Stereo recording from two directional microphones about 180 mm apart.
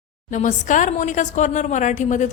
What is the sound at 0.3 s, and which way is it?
A woman's voice, 45° left (ahead or behind).